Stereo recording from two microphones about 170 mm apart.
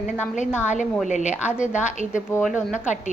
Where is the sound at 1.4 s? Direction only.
10° right (ahead or behind).